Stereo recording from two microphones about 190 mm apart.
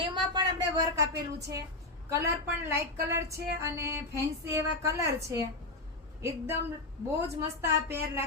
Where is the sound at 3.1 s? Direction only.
15° right (ahead or behind).